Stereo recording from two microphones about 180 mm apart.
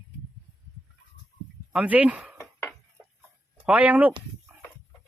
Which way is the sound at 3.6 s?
10° right (ahead or behind).